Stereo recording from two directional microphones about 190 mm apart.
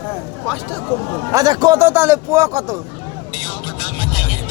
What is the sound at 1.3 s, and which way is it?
A man's voice, 20° right (ahead or behind).